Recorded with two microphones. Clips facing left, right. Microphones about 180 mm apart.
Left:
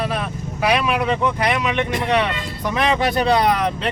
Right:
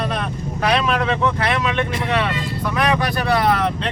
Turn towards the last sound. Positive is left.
turn(degrees=15)  # may be behind; listen again after turning